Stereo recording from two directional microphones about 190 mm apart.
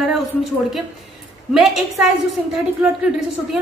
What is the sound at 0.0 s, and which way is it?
A woman's voice, centre (ahead or behind).